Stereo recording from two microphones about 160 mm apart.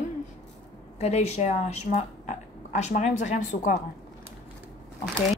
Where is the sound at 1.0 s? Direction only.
45° left (ahead or behind).